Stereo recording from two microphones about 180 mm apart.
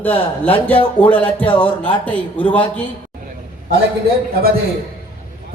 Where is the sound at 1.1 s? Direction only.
10° left (ahead or behind).